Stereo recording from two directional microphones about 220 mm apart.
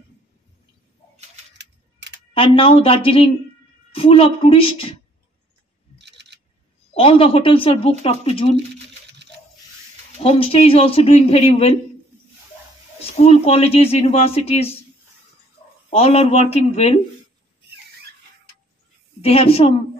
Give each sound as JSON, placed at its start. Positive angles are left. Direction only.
{"t": 1.6, "sound": "a sound", "side_deg": -50}
{"t": 2.3, "sound": "speech", "side_deg": 25}
{"t": 5.9, "sound": "a sound", "side_deg": -50}
{"t": 6.9, "sound": "speech", "side_deg": 25}
{"t": 10.2, "sound": "speech", "side_deg": 25}
{"t": 13.0, "sound": "speech", "side_deg": 30}
{"t": 15.9, "sound": "speech", "side_deg": 30}
{"t": 19.2, "sound": "speech", "side_deg": 25}